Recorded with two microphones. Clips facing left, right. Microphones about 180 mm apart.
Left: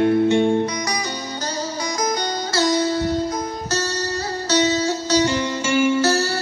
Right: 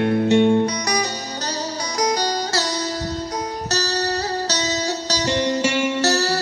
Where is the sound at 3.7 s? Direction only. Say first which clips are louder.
Right 2 dB; 70° right (ahead or behind).